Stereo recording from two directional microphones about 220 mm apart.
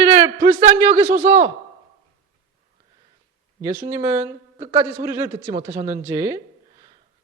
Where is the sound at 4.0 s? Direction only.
10° right (ahead or behind).